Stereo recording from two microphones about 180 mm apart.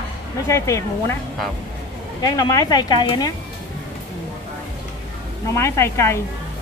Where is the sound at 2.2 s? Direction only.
20° left (ahead or behind).